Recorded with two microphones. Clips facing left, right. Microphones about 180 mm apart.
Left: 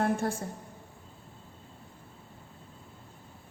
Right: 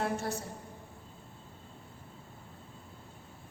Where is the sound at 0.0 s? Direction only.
50° left (ahead or behind).